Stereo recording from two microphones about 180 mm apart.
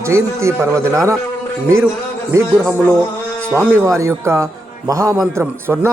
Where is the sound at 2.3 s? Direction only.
10° right (ahead or behind).